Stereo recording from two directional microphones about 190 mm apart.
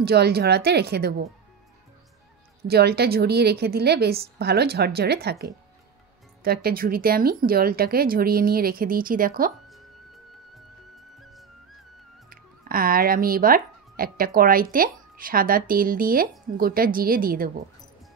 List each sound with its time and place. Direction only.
0.0 s a woman's voice: 55° right (ahead or behind)
2.7 s a woman's voice: 55° right (ahead or behind)
12.3 s speech: 50° right (ahead or behind)